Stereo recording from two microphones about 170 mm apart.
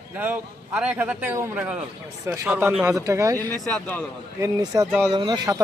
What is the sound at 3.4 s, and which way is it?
Speech, 10° left (ahead or behind).